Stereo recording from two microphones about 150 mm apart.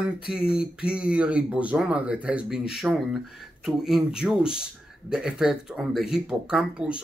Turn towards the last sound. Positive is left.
turn(degrees=-5)  # may be behind; listen again after turning